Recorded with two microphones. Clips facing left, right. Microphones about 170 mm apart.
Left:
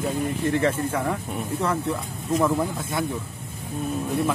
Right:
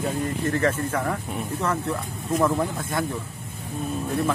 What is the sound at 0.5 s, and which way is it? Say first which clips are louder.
Speech: even; 10° left (ahead or behind).